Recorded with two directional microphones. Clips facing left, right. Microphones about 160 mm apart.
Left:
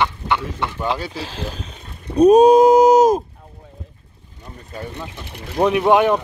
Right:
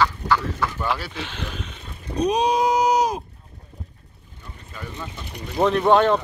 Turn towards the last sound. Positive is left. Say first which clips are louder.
# left 2 dB
turn(degrees=15)  # may be behind; listen again after turning